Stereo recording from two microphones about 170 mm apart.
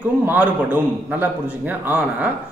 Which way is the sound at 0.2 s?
10° right (ahead or behind).